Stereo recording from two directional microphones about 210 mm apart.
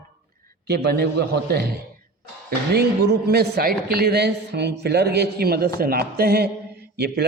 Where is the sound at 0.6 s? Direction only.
50° right (ahead or behind).